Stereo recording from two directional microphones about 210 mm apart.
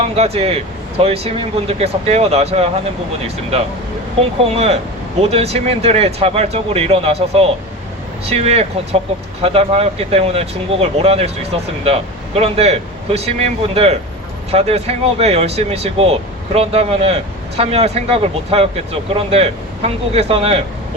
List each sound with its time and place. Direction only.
0.0 s speech: 30° right (ahead or behind)
4.2 s speech: 30° right (ahead or behind)